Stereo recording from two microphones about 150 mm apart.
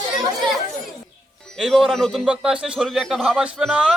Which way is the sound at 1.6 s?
Centre (ahead or behind).